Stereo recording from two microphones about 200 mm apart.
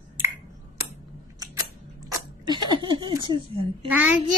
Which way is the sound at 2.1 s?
20° right (ahead or behind).